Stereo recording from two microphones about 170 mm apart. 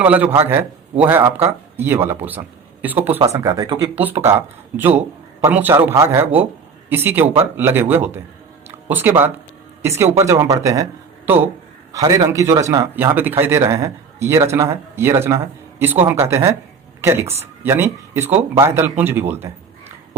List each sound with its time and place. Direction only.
0.0 s a man's voice: 10° right (ahead or behind); by 4.0 s 25° right (ahead or behind)
4.0 s a man's voice: 15° right (ahead or behind)
11.9 s a man's voice: 20° right (ahead or behind)